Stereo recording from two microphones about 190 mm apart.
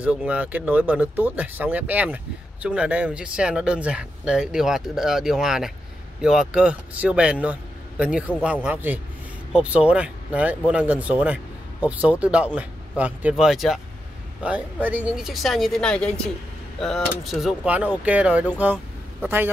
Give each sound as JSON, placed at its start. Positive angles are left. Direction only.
{"t": 0.0, "sound": "speech", "side_deg": -5}